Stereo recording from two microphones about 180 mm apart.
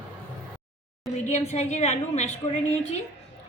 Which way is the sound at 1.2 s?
40° left (ahead or behind).